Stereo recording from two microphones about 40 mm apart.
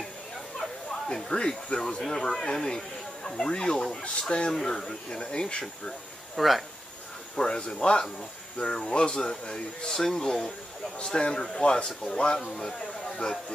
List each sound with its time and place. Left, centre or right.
1.0 s speech: centre
4.5 s speech: centre
6.3 s speech: centre
7.3 s a man's voice: left